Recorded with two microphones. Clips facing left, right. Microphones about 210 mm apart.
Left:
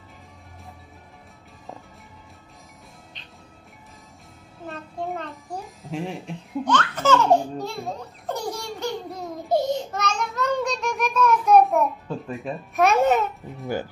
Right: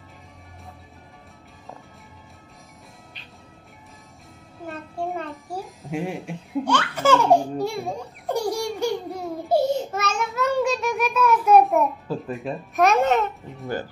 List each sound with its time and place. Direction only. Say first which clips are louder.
4.6 s music: right 1 dB; centre (ahead or behind)